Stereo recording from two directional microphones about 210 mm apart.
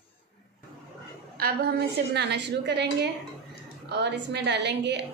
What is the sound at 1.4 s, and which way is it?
A woman's voice, 50° right (ahead or behind).